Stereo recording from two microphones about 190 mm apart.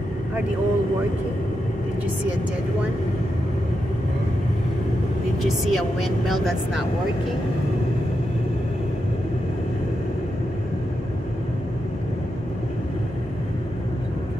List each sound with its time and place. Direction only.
5.4 s a woman's voice: centre (ahead or behind)